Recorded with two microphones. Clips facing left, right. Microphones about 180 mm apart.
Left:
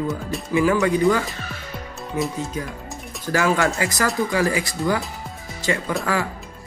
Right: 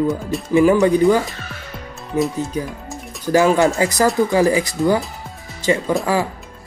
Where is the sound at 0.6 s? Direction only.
20° right (ahead or behind).